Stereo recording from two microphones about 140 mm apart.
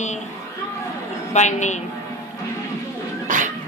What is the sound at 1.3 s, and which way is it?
Speech, 55° left (ahead or behind).